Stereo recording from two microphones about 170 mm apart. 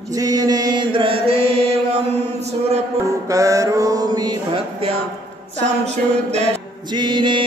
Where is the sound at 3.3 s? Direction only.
20° right (ahead or behind).